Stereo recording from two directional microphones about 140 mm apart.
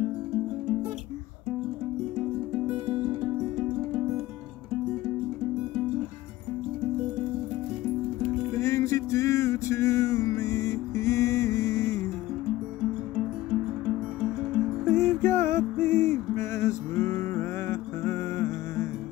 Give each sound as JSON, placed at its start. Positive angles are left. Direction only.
{"t": 8.5, "sound": "music", "side_deg": 20}
{"t": 14.9, "sound": "music", "side_deg": 15}